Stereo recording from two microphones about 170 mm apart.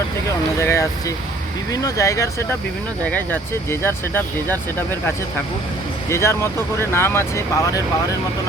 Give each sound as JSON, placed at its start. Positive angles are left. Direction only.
{"t": 0.6, "sound": "speech", "side_deg": 15}